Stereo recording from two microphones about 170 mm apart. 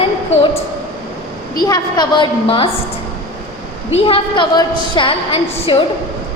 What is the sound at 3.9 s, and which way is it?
A woman's voice, 30° left (ahead or behind).